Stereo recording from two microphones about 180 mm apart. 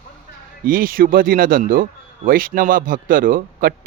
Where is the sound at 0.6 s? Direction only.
50° right (ahead or behind).